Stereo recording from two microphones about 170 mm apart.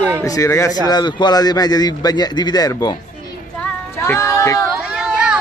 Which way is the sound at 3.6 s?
10° left (ahead or behind).